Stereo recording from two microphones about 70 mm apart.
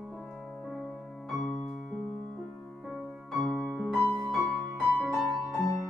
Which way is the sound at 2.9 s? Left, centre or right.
Centre.